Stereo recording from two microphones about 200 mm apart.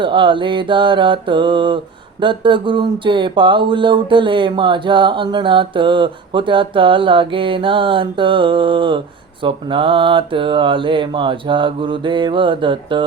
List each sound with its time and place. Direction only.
0.0 s speech: 25° right (ahead or behind)